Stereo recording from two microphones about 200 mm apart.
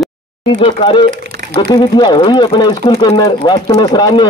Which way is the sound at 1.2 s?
55° right (ahead or behind).